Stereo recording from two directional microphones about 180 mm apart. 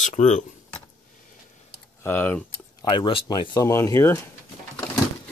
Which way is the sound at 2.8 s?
25° left (ahead or behind).